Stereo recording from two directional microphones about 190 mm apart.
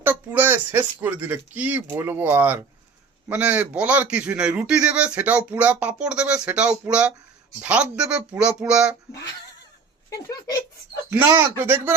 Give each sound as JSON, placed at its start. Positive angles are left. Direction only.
{"t": 0.0, "sound": "a man's voice", "side_deg": -10}
{"t": 10.1, "sound": "speech", "side_deg": 15}
{"t": 11.1, "sound": "a man's voice", "side_deg": -10}